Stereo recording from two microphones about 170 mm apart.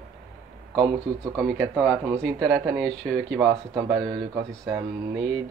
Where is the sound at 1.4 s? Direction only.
15° right (ahead or behind).